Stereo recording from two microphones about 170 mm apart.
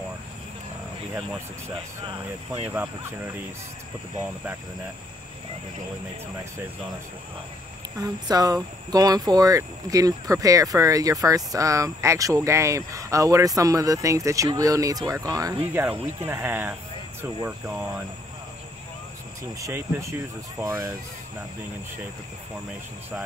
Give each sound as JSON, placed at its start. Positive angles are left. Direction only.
{"t": 2.5, "sound": "speech", "side_deg": -15}
{"t": 8.3, "sound": "speech", "side_deg": -20}
{"t": 19.6, "sound": "speech", "side_deg": -15}